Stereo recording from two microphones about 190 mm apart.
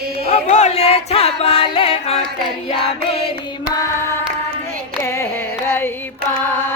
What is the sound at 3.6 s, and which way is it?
Singing, 15° left (ahead or behind).